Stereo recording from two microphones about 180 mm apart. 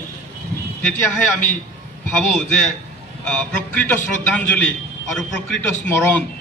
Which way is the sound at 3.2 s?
10° left (ahead or behind).